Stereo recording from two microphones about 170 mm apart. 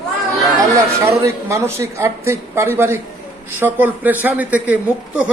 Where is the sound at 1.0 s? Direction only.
15° right (ahead or behind).